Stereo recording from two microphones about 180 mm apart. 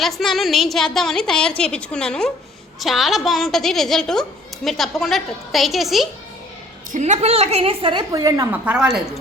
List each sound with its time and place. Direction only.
0.0 s a woman's voice: centre (ahead or behind)
6.9 s a woman's voice: 40° right (ahead or behind); by 8.4 s 20° right (ahead or behind)
8.6 s a woman's voice: 5° right (ahead or behind)